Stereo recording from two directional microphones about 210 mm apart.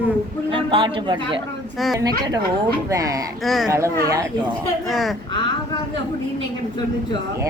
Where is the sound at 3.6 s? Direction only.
15° right (ahead or behind).